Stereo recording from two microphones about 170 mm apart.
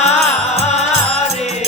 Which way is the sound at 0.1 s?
40° left (ahead or behind).